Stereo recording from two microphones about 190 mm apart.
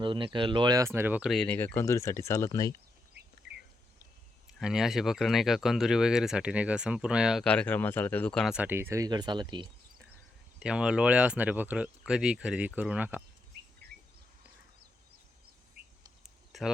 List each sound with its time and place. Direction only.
0.0 s speech: 25° right (ahead or behind); by 2.7 s 15° left (ahead or behind)
3.4 s bird: 65° right (ahead or behind)
4.5 s speech: 5° right (ahead or behind); by 9.6 s 25° right (ahead or behind)
10.6 s speech: 5° right (ahead or behind)
16.2 s a sound: centre (ahead or behind)